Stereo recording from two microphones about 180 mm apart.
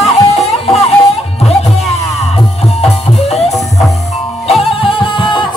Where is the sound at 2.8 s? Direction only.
35° left (ahead or behind).